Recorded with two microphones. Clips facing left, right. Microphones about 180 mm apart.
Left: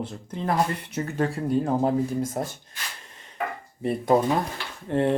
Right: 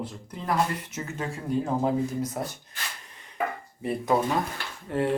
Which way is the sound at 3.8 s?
30° left (ahead or behind).